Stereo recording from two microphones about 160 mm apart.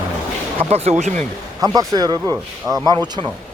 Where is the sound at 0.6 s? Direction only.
40° right (ahead or behind).